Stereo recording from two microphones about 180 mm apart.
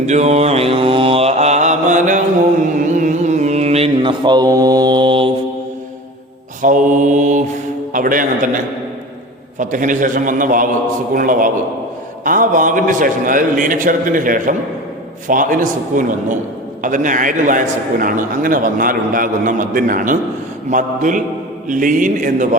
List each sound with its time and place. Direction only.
0.0 s mantra: 40° right (ahead or behind)
6.6 s mantra: 45° right (ahead or behind)
7.9 s a man's voice: 50° right (ahead or behind)
9.6 s a man's voice: 45° right (ahead or behind)